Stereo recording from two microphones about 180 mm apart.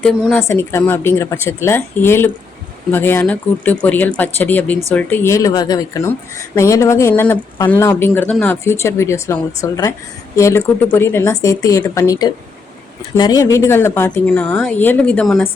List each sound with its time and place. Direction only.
0.0 s speech: 5° left (ahead or behind)